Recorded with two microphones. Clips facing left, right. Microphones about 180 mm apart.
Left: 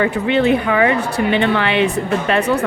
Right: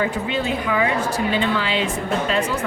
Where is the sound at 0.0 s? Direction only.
65° left (ahead or behind).